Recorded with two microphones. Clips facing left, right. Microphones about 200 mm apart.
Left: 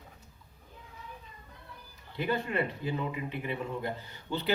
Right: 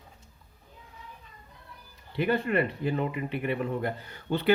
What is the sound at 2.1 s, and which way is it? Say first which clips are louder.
A man's voice: right 5 dB; 60° right (ahead or behind).